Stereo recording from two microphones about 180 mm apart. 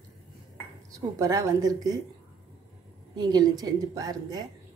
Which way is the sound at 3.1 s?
25° right (ahead or behind).